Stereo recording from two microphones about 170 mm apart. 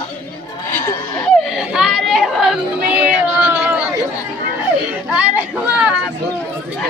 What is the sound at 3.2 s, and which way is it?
Cat, 5° right (ahead or behind).